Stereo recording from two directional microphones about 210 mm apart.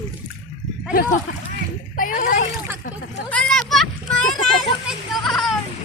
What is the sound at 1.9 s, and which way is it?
Speech, 40° left (ahead or behind).